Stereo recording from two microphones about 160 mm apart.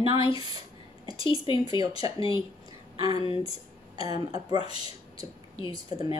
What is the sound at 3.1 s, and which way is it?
Speech, 35° left (ahead or behind).